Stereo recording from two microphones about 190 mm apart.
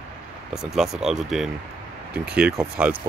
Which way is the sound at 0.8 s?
Centre (ahead or behind).